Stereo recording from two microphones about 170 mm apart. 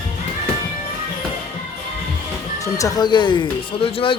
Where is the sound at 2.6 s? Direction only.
20° left (ahead or behind).